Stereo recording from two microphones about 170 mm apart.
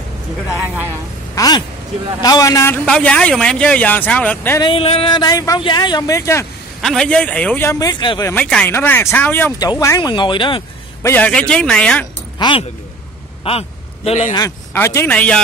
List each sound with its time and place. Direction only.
0.5 s a man's voice: 10° right (ahead or behind)
1.3 s a sound: 20° left (ahead or behind)
2.2 s a man's voice: 20° left (ahead or behind)
4.6 s speech: 30° left (ahead or behind)
6.8 s a man's voice: 5° left (ahead or behind); by 8.3 s 25° left (ahead or behind)
8.3 s a man's voice: 5° left (ahead or behind); by 10.6 s 30° left (ahead or behind)
11.0 s speech: 10° left (ahead or behind)
12.4 s speech: 30° left (ahead or behind)
13.4 s a sound: 35° left (ahead or behind)
14.3 s a man's voice: 15° left (ahead or behind)